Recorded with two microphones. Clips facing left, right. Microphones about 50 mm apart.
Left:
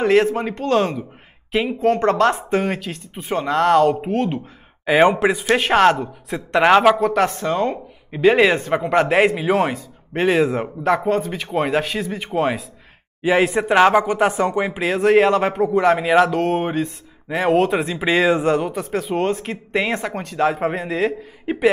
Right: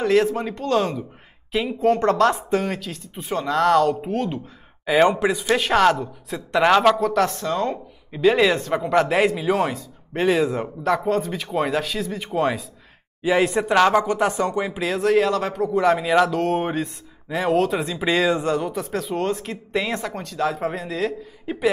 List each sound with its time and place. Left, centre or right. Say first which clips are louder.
0.0 s speech: left 3 dB; left
1.8 s speech: left 1 dB; centre
2.5 s speech: left 2 dB; left